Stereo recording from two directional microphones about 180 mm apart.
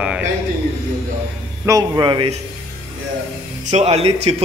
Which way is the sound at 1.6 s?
20° right (ahead or behind).